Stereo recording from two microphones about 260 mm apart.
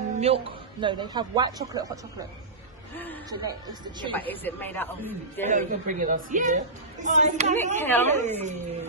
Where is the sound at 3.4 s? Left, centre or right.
Centre.